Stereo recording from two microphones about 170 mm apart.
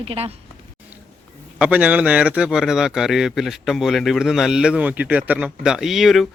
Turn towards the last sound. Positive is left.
turn(degrees=0)  # may be behind; listen again after turning